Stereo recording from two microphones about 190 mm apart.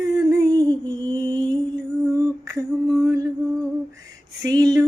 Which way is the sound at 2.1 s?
15° right (ahead or behind).